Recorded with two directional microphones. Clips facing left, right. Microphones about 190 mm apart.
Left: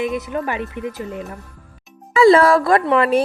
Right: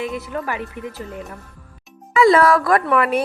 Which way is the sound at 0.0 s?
20° left (ahead or behind).